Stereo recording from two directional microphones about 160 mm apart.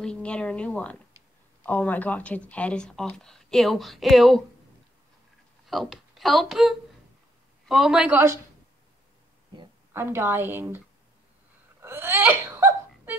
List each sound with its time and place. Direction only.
0.0 s a woman's voice: 5° left (ahead or behind)
5.7 s speech: centre (ahead or behind)
9.9 s a woman's voice: 15° right (ahead or behind)
11.8 s wail: 15° right (ahead or behind)